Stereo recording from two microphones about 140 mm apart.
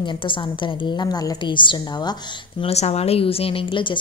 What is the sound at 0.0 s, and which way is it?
Speech, 35° left (ahead or behind).